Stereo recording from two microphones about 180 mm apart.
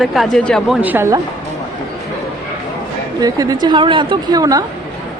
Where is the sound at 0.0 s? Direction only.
Centre (ahead or behind).